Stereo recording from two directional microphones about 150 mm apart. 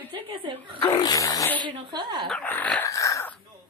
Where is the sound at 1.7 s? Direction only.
30° right (ahead or behind).